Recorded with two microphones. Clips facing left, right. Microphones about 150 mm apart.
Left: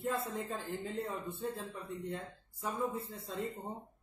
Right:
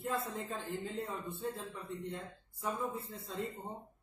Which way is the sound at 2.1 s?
Centre (ahead or behind).